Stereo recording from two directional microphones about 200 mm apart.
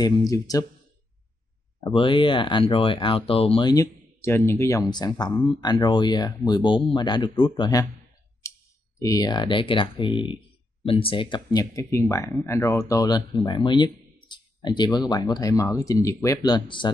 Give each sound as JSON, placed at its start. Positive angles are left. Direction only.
{"t": 0.3, "sound": "speech", "side_deg": 20}
{"t": 1.8, "sound": "speech", "side_deg": 25}
{"t": 9.0, "sound": "speech", "side_deg": 20}